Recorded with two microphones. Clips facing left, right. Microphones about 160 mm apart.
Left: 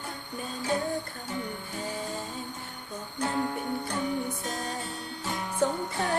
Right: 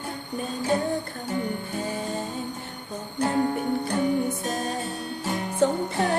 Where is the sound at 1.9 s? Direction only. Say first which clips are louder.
Right 3 dB; 65° right (ahead or behind).